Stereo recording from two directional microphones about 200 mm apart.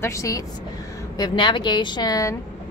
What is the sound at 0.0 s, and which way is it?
Speech, 15° left (ahead or behind).